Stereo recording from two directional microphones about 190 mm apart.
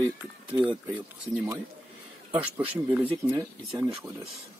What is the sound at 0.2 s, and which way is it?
Speech, 10° right (ahead or behind).